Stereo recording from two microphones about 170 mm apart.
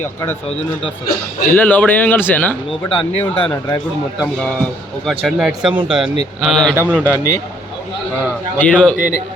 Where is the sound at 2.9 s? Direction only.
30° left (ahead or behind).